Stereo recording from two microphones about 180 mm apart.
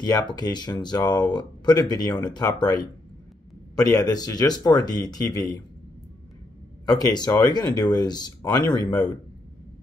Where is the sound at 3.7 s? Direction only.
20° left (ahead or behind).